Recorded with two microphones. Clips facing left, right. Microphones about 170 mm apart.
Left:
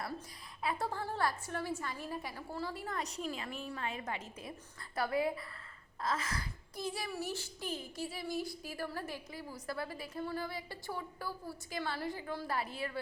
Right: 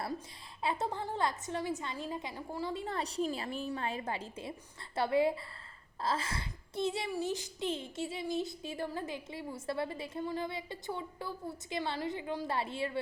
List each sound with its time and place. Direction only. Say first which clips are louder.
0.6 s a woman's voice: right 2 dB; 25° right (ahead or behind)